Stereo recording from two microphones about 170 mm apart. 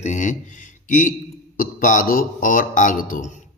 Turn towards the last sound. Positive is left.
turn(degrees=50)  # may be behind; listen again after turning